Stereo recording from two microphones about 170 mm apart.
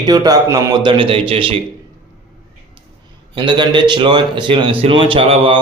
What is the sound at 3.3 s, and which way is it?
A man's voice, 30° right (ahead or behind).